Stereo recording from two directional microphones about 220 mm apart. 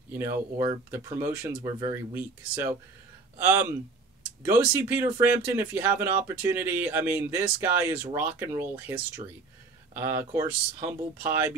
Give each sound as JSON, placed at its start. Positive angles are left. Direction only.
{"t": 0.1, "sound": "speech", "side_deg": -10}